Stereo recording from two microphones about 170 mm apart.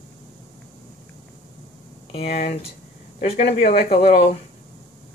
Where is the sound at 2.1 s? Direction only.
35° left (ahead or behind).